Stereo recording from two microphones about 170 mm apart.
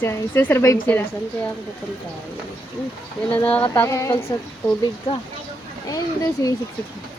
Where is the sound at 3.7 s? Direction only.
20° left (ahead or behind).